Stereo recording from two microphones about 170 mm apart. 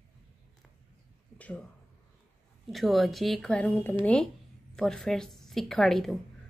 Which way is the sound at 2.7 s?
Centre (ahead or behind).